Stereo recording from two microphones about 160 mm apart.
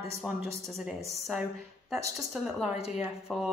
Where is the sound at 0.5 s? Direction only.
40° right (ahead or behind).